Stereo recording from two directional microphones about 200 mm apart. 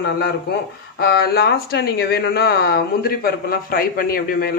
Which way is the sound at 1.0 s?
50° left (ahead or behind).